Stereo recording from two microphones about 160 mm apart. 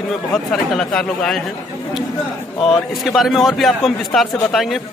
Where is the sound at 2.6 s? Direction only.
Centre (ahead or behind).